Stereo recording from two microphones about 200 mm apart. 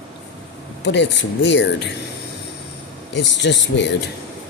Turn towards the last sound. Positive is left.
turn(degrees=60)  # may be behind; listen again after turning